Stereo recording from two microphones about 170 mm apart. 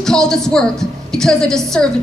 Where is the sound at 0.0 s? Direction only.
5° left (ahead or behind).